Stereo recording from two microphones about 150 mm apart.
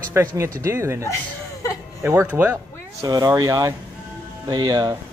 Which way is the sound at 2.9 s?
25° right (ahead or behind).